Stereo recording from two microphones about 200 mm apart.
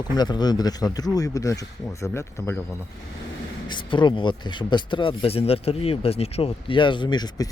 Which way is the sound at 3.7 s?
25° left (ahead or behind).